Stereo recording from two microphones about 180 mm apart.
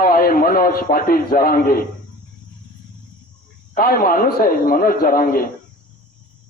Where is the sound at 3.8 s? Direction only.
50° left (ahead or behind).